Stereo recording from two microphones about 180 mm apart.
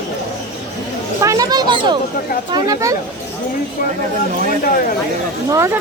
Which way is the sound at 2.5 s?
20° right (ahead or behind).